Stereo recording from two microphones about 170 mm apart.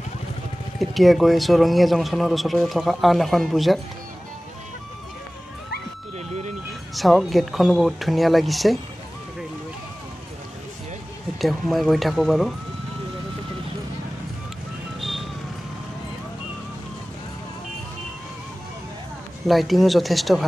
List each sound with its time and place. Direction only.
0.7 s speech: centre (ahead or behind)
6.1 s vehicle: 40° right (ahead or behind)
6.9 s speech: centre (ahead or behind)
11.3 s speech: centre (ahead or behind)
15.0 s vehicle: centre (ahead or behind)
19.4 s speech: centre (ahead or behind)